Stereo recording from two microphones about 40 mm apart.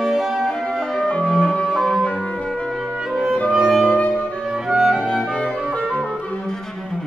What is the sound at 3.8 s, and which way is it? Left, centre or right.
Music, left.